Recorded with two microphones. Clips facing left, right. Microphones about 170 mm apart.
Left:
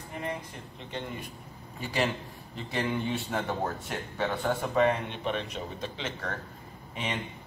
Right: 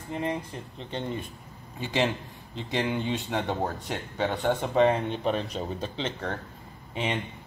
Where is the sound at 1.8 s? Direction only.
20° right (ahead or behind).